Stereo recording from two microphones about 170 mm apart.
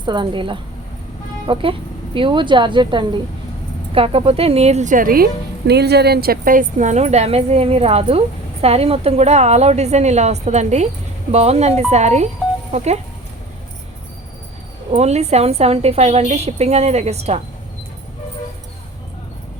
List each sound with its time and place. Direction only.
0.0 s a woman's voice: 25° right (ahead or behind)
14.9 s speech: 40° right (ahead or behind)